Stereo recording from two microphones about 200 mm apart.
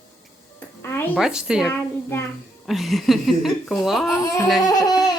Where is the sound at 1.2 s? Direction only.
5° right (ahead or behind).